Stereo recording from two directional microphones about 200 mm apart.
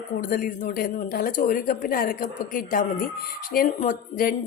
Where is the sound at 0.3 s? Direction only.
45° left (ahead or behind).